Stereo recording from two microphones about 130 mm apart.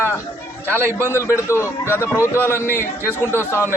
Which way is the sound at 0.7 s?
20° right (ahead or behind).